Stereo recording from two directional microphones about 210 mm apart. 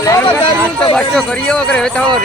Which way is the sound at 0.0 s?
15° left (ahead or behind).